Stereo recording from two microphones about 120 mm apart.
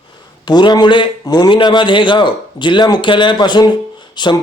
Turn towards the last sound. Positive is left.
turn(degrees=40)  # may be behind; listen again after turning